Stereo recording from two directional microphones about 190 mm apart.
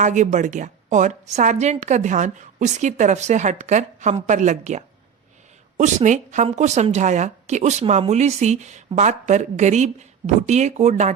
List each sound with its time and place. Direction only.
0.0 s speech: 40° right (ahead or behind)